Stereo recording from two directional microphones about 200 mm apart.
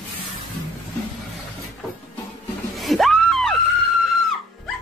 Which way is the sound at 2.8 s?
Centre (ahead or behind).